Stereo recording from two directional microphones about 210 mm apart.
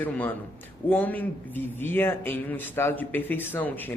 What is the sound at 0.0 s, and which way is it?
Speech, 10° left (ahead or behind).